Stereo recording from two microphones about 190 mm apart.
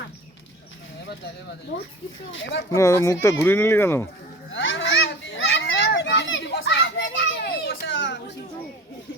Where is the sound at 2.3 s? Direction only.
75° left (ahead or behind).